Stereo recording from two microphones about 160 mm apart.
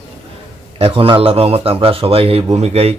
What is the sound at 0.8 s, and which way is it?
Speech, 35° right (ahead or behind).